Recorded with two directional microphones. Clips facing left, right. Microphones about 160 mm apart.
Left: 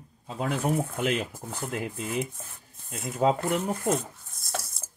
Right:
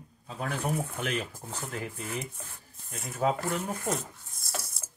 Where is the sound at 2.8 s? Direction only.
25° left (ahead or behind).